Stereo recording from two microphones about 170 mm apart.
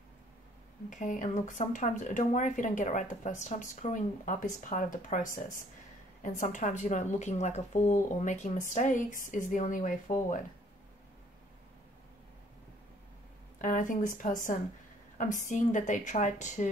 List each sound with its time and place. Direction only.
0.8 s speech: 50° left (ahead or behind)
13.6 s speech: 50° left (ahead or behind)